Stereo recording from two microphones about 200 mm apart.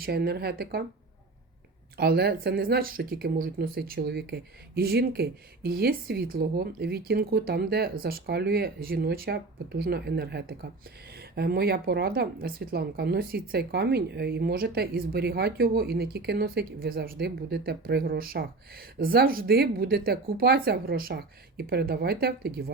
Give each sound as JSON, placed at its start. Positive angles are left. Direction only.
{"t": 0.0, "sound": "a woman's voice", "side_deg": -50}
{"t": 2.0, "sound": "a woman's voice", "side_deg": -55}